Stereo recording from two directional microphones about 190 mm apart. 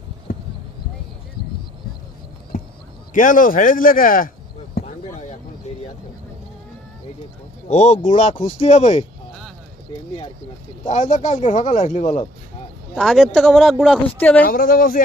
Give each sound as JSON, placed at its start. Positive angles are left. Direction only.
{"t": 3.1, "sound": "speech", "side_deg": 45}
{"t": 7.7, "sound": "speech", "side_deg": 40}
{"t": 10.8, "sound": "speech", "side_deg": 40}
{"t": 13.0, "sound": "speech", "side_deg": 0}
{"t": 14.4, "sound": "speech", "side_deg": 50}